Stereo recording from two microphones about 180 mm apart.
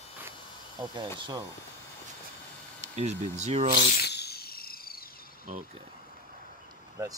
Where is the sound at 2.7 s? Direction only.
40° right (ahead or behind).